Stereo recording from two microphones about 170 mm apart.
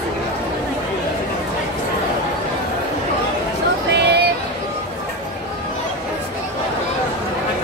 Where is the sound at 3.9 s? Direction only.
75° right (ahead or behind).